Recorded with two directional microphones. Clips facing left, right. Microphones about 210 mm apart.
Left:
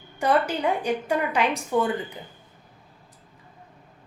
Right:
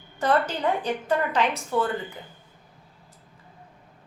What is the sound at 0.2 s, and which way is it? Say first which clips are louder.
A woman's voice: left 1 dB; 10° left (ahead or behind).